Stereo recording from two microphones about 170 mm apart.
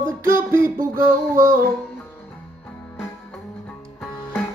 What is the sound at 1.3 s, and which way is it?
Music, 55° right (ahead or behind).